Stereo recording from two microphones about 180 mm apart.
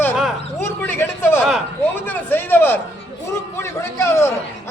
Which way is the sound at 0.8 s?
10° left (ahead or behind).